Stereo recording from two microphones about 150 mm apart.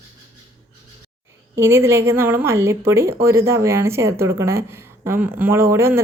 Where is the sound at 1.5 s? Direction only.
15° right (ahead or behind).